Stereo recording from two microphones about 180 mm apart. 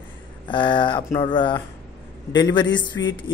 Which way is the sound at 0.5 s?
25° left (ahead or behind).